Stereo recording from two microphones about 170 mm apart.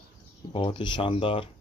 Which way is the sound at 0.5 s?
30° left (ahead or behind).